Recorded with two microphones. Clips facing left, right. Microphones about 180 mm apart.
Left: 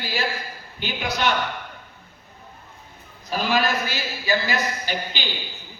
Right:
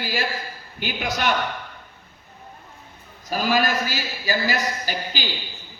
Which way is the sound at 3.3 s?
45° right (ahead or behind).